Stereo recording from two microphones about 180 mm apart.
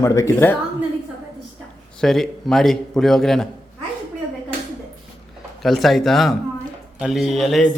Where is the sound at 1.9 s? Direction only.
Centre (ahead or behind).